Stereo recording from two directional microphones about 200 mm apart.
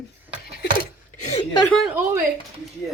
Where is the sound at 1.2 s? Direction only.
30° left (ahead or behind).